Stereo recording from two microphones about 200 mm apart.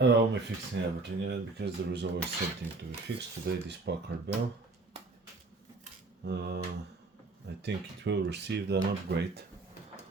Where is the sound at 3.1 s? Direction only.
60° right (ahead or behind).